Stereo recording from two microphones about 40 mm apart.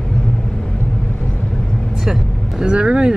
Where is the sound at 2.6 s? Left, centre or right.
Right.